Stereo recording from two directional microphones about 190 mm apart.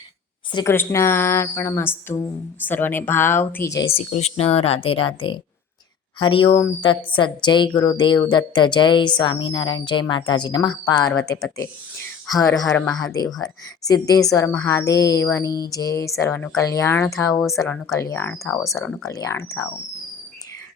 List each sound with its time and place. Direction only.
0.5 s speech: 15° left (ahead or behind)
3.9 s a woman's voice: 35° left (ahead or behind); by 19.6 s 15° left (ahead or behind)